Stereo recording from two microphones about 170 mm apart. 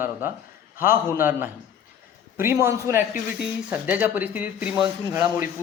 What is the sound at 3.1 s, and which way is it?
Speech, 60° left (ahead or behind).